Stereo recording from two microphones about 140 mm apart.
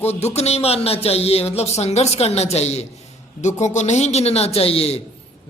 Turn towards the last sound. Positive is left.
turn(degrees=45)  # may be behind; listen again after turning